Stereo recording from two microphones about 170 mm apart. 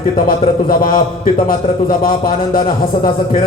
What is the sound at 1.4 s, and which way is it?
A man's voice, 55° left (ahead or behind).